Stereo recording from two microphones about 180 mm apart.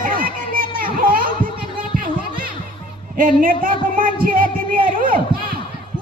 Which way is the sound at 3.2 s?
50° right (ahead or behind).